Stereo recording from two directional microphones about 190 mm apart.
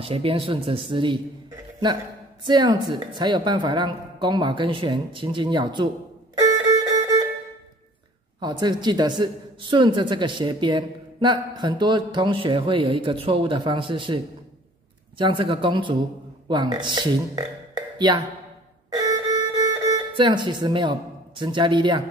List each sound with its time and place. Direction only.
0.0 s a man's voice: 30° right (ahead or behind)
2.4 s a man's voice: 20° right (ahead or behind)
6.3 s violin: 20° right (ahead or behind)
8.4 s a man's voice: 20° right (ahead or behind)
17.7 s music: 25° right (ahead or behind)
21.4 s a man's voice: 25° right (ahead or behind)